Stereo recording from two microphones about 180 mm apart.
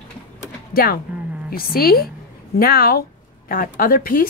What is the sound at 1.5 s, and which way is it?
A woman's voice, 55° left (ahead or behind).